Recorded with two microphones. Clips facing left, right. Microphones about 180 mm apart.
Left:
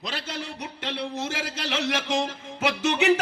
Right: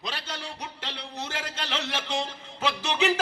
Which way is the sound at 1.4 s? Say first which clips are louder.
Left 4 dB; 90° left.